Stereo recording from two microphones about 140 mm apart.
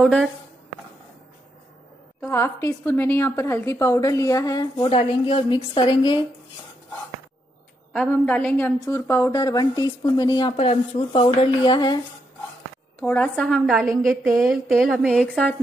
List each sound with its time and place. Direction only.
0.0 s a woman's voice: centre (ahead or behind)
2.2 s a woman's voice: 15° left (ahead or behind)
4.7 s speech: 40° left (ahead or behind)
7.9 s a woman's voice: 10° left (ahead or behind); by 12.0 s 30° left (ahead or behind)
13.0 s a woman's voice: 10° left (ahead or behind)